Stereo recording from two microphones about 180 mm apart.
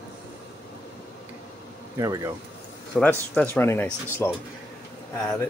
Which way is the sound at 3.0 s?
5° left (ahead or behind).